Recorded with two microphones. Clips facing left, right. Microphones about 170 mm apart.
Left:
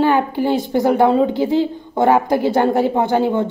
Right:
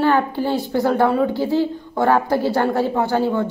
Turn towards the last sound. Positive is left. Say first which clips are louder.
# left 2 dB
turn(degrees=20)  # may be behind; listen again after turning